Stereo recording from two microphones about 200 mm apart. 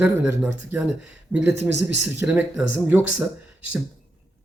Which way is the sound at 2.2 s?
10° right (ahead or behind).